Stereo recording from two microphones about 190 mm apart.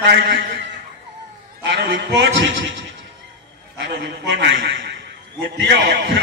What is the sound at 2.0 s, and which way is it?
A man's voice, 75° right (ahead or behind).